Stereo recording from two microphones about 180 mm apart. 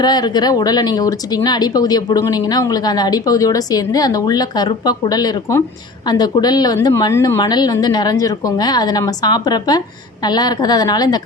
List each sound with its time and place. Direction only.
0.0 s speech: 25° left (ahead or behind)